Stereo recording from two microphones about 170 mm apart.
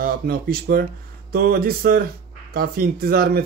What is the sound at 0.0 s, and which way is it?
A man's voice, 65° right (ahead or behind).